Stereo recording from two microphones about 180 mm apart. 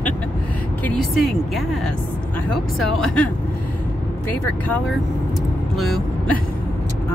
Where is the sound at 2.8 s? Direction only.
5° left (ahead or behind).